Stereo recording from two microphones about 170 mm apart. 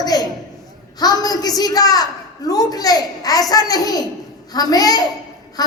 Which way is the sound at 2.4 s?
20° left (ahead or behind).